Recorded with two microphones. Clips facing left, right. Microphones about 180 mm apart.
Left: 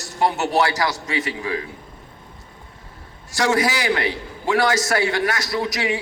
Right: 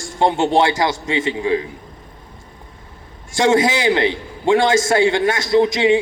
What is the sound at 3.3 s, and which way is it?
A man's voice, 25° right (ahead or behind).